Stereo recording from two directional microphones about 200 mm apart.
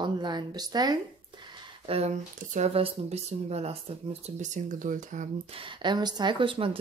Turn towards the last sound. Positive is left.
turn(degrees=-25)  # may be behind; listen again after turning